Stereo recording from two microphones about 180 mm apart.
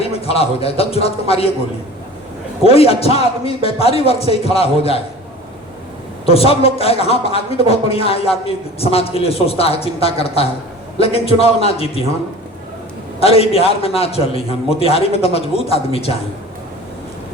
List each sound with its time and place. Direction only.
0.0 s a man's voice: 35° left (ahead or behind)
2.6 s a man's voice: 35° left (ahead or behind)
6.2 s a man's voice: 35° left (ahead or behind)
13.2 s a man's voice: 35° left (ahead or behind)